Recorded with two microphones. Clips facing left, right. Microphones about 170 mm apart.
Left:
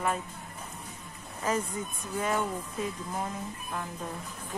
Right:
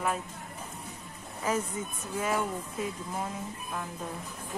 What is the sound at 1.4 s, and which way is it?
Speech, 10° right (ahead or behind).